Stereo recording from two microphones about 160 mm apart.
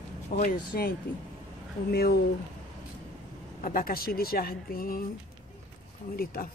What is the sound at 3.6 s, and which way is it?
Speech, 65° left (ahead or behind).